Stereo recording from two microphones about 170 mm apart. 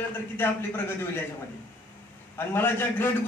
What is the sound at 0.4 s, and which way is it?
Speech, 10° left (ahead or behind).